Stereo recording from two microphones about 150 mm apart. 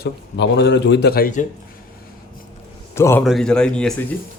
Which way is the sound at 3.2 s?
Centre (ahead or behind).